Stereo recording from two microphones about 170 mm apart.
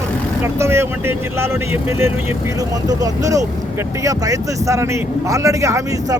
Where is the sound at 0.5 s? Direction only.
15° right (ahead or behind).